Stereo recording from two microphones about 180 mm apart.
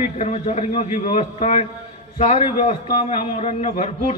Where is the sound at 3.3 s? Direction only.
40° left (ahead or behind).